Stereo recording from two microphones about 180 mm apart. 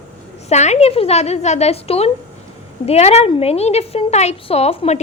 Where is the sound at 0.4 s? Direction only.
40° left (ahead or behind).